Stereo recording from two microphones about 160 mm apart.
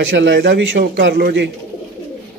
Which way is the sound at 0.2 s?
90° right.